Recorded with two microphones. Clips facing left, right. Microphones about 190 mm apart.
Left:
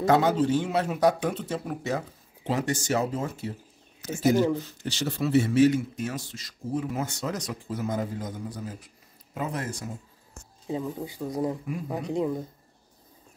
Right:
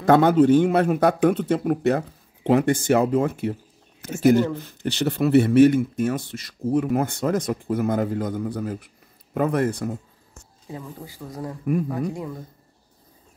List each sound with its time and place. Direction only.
0.0 s speech: 55° right (ahead or behind)
10.7 s speech: 20° left (ahead or behind)